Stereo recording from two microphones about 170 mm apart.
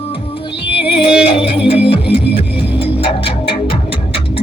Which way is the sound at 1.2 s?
35° left (ahead or behind).